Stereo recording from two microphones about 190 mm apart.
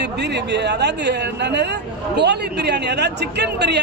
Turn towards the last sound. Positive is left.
turn(degrees=-60)  # may be behind; listen again after turning